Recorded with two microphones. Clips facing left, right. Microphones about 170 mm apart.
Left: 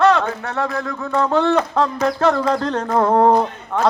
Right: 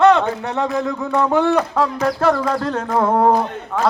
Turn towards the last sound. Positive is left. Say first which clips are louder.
# left 1 dB
turn(degrees=0)  # may be behind; listen again after turning